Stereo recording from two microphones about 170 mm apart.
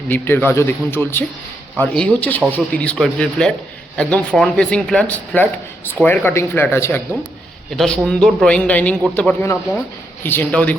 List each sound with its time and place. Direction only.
0.1 s a man's voice: 10° left (ahead or behind)
7.8 s a man's voice: 5° left (ahead or behind)